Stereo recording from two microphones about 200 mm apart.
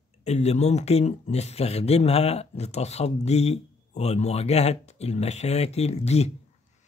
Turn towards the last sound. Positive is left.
turn(degrees=30)  # may be behind; listen again after turning